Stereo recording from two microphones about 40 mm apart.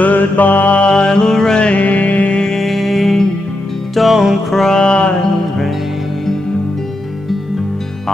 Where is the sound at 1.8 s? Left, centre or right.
Left.